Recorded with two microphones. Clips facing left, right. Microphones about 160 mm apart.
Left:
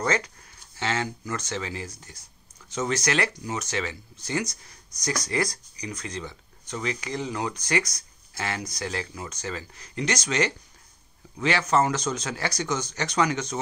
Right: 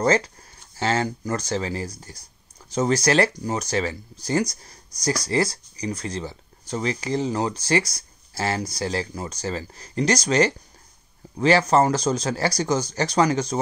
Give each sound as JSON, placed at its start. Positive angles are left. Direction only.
{"t": 0.0, "sound": "speech", "side_deg": -35}